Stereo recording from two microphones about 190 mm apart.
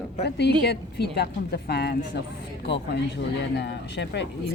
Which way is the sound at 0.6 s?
60° left (ahead or behind).